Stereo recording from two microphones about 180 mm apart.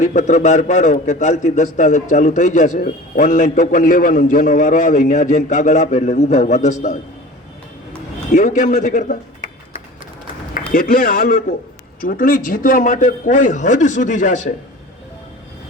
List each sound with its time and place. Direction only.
0.0 s a man's voice: 40° left (ahead or behind)
8.3 s a man's voice: 45° left (ahead or behind)
10.7 s a man's voice: 50° left (ahead or behind)